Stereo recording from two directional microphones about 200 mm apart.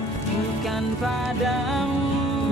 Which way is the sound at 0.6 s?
Centre (ahead or behind).